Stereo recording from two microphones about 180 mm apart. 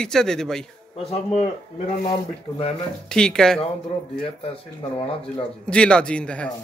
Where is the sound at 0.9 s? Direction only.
35° left (ahead or behind).